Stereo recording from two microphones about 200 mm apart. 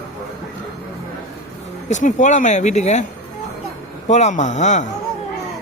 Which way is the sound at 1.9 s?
40° left (ahead or behind).